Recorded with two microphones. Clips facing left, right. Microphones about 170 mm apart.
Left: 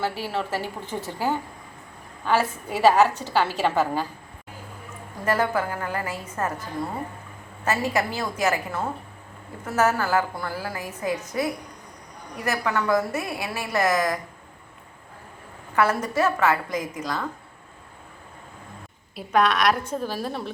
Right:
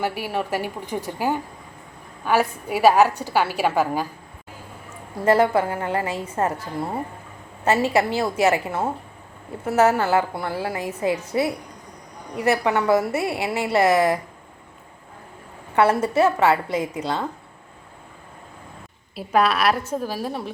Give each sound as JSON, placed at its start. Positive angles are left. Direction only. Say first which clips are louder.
{"t": 0.0, "sound": "a woman's voice", "louder": "right 2 dB", "side_deg": -15}
{"t": 5.2, "sound": "a woman's voice", "louder": "right 6 dB", "side_deg": -30}
{"t": 7.6, "sound": "a woman's voice", "louder": "right 5 dB", "side_deg": -25}
{"t": 15.7, "sound": "a woman's voice", "louder": "right 4 dB", "side_deg": -30}
{"t": 19.1, "sound": "a woman's voice", "louder": "right 1 dB", "side_deg": -5}